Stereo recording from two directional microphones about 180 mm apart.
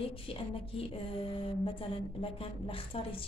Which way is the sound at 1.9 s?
30° left (ahead or behind).